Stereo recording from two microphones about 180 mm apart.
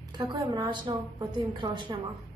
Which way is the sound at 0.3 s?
20° right (ahead or behind).